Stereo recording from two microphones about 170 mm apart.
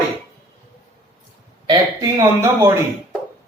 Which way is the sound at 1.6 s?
20° right (ahead or behind).